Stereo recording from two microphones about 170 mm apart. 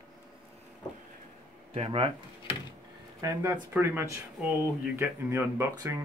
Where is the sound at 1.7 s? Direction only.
35° right (ahead or behind).